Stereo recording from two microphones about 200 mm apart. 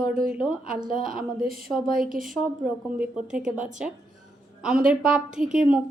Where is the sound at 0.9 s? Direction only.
Centre (ahead or behind).